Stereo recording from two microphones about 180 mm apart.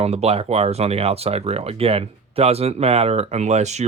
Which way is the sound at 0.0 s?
35° right (ahead or behind).